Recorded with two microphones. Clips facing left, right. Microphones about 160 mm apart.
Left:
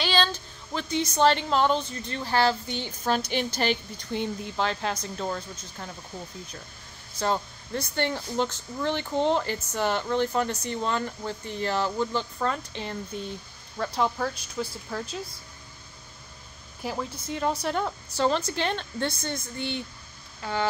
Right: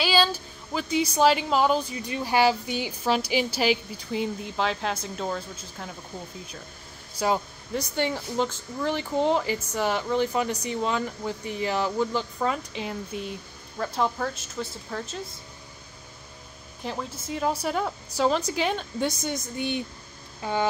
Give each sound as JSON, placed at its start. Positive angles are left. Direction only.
{"t": 0.0, "sound": "a woman's voice", "side_deg": -5}
{"t": 7.2, "sound": "a woman's voice", "side_deg": -10}
{"t": 16.8, "sound": "a woman's voice", "side_deg": 0}